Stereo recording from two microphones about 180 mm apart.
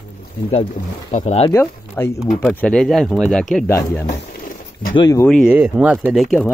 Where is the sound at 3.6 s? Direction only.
15° left (ahead or behind).